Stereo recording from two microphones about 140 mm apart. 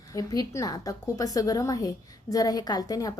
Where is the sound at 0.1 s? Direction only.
25° left (ahead or behind).